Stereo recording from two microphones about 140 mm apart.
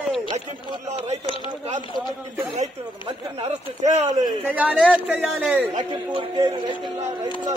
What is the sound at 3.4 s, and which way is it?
Speech, 55° right (ahead or behind).